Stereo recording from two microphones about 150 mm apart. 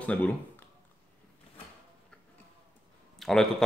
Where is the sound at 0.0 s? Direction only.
10° left (ahead or behind).